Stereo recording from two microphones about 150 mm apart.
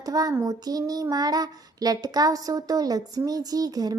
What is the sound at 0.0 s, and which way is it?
A woman's voice, 25° right (ahead or behind).